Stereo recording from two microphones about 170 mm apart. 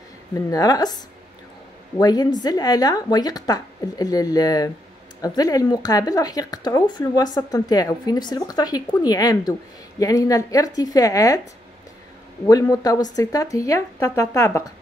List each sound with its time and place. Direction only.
0.3 s speech: 20° left (ahead or behind)
2.0 s speech: 25° left (ahead or behind)
12.4 s speech: 20° left (ahead or behind)